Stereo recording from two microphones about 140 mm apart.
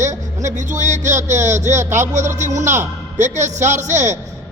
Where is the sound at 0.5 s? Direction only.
60° right (ahead or behind).